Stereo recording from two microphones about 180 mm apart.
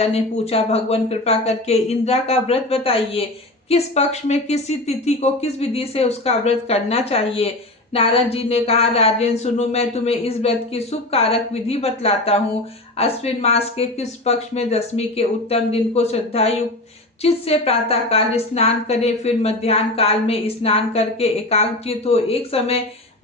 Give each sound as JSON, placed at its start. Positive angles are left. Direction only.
{"t": 0.0, "sound": "a woman's voice", "side_deg": 35}